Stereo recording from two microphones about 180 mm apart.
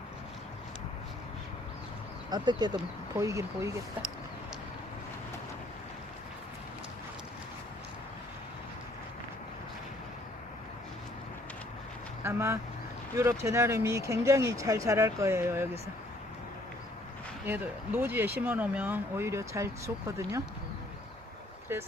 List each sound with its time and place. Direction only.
2.3 s speech: 25° right (ahead or behind)
12.2 s vehicle: 15° right (ahead or behind)
13.4 s speech: 15° right (ahead or behind)
17.4 s speech: 10° right (ahead or behind)
21.7 s speech: 15° right (ahead or behind)